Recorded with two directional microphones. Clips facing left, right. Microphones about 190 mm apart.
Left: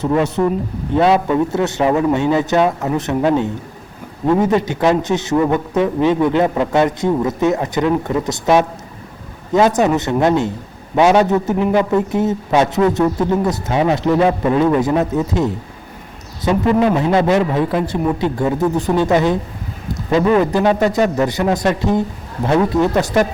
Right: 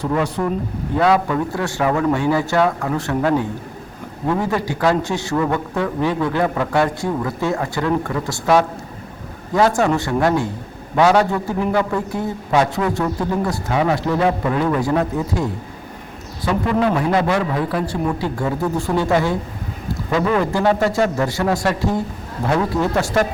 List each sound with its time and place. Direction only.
0.0 s a man's voice: 25° left (ahead or behind)